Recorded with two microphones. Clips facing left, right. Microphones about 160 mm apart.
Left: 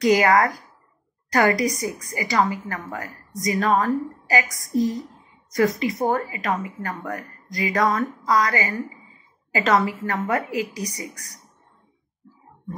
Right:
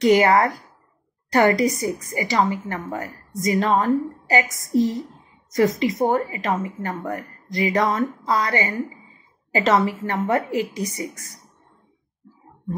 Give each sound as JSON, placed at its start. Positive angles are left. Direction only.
{"t": 0.0, "sound": "a woman's voice", "side_deg": -25}